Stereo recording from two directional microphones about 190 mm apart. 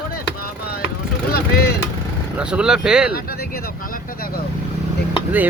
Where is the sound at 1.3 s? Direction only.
55° left (ahead or behind).